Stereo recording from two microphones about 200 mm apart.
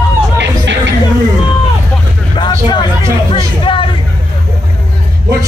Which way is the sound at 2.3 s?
25° left (ahead or behind).